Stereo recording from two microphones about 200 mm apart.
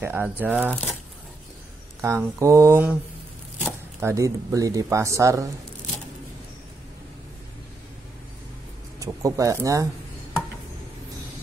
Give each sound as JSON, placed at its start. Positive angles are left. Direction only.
{"t": 0.0, "sound": "speech", "side_deg": -10}
{"t": 2.0, "sound": "speech", "side_deg": -15}
{"t": 4.0, "sound": "speech", "side_deg": -15}
{"t": 9.0, "sound": "speech", "side_deg": -15}